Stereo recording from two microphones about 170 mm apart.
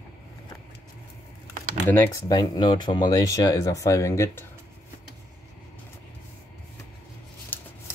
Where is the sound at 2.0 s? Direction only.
25° left (ahead or behind).